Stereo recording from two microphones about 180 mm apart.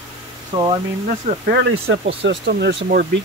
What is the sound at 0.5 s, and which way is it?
Speech, 30° right (ahead or behind).